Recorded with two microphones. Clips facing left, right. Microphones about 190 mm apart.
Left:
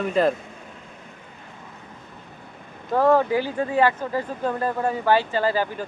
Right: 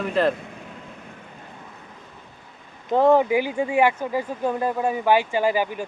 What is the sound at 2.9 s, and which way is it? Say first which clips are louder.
Speech: right 1 dB; 20° right (ahead or behind).